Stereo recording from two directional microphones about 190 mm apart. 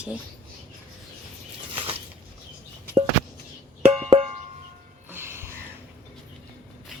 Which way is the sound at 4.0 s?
30° right (ahead or behind).